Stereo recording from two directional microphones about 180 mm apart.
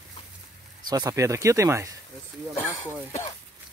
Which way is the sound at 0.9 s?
20° right (ahead or behind).